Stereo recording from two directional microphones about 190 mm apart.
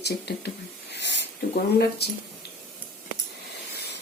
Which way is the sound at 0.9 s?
65° left (ahead or behind).